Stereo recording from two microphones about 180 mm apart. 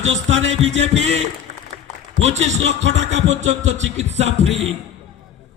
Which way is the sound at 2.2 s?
35° right (ahead or behind).